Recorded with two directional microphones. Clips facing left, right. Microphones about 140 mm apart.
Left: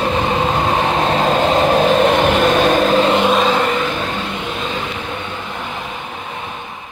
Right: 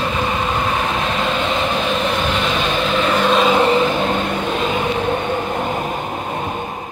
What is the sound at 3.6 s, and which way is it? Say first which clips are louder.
Vehicle: right 4 dB; 25° right (ahead or behind).